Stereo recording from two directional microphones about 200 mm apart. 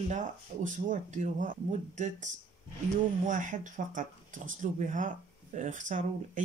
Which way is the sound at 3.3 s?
40° right (ahead or behind).